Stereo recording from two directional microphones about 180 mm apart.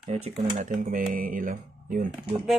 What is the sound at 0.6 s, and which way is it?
Speech, 50° right (ahead or behind).